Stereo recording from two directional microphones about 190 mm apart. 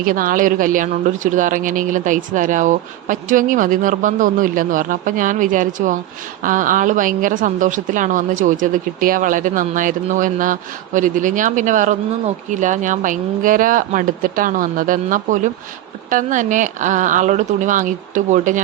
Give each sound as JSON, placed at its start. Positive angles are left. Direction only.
{"t": 0.0, "sound": "speech", "side_deg": -45}